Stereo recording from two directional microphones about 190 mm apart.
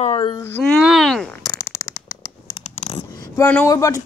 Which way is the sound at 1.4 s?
20° left (ahead or behind).